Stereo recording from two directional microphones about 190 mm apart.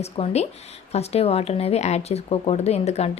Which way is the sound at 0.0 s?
35° left (ahead or behind).